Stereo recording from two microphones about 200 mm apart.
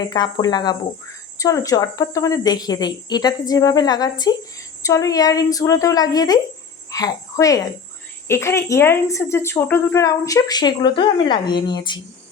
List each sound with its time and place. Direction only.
0.0 s a woman's voice: 20° left (ahead or behind)